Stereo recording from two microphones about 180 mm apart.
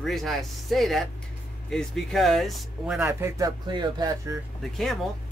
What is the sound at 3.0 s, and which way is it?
Speech, 15° right (ahead or behind).